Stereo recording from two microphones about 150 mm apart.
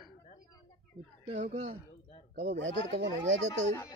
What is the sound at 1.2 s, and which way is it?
Speech, 50° right (ahead or behind).